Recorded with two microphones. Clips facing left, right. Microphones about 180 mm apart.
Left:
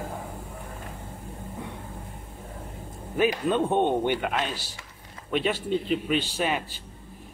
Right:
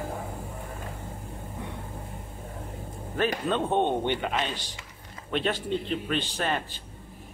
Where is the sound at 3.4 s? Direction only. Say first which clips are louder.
Left 2 dB; 10° left (ahead or behind).